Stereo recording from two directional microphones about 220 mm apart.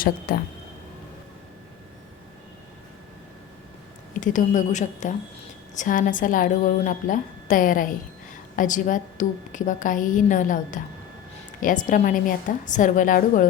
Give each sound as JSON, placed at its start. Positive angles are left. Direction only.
{"t": 0.3, "sound": "a woman's voice", "side_deg": 40}
{"t": 4.2, "sound": "a woman's voice", "side_deg": 35}